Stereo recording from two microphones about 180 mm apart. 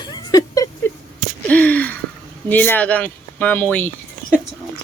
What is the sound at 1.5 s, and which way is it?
Speech, 10° left (ahead or behind).